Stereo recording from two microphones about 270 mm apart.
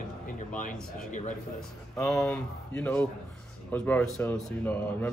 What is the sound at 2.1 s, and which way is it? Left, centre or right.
Speech, centre.